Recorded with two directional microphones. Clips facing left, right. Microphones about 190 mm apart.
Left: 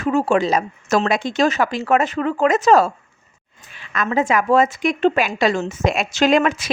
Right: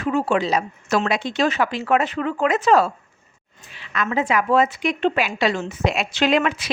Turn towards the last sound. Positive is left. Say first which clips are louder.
# left 3 dB
turn(degrees=45)  # may be behind; listen again after turning